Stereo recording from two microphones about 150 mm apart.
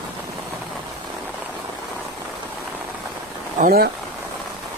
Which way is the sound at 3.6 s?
85° right.